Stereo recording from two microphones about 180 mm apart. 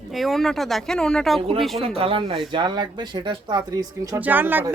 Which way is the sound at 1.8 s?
30° right (ahead or behind).